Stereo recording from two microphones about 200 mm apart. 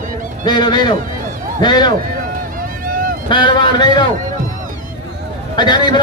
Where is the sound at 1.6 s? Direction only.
20° left (ahead or behind).